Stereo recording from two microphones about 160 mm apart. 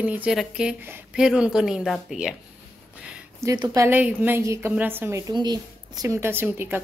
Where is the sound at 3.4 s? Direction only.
20° right (ahead or behind).